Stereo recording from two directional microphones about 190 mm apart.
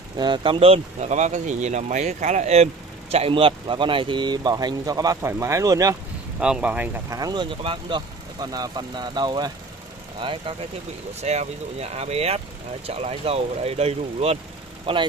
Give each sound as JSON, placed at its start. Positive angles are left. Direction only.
{"t": 0.2, "sound": "speech", "side_deg": -25}
{"t": 6.4, "sound": "speech", "side_deg": -5}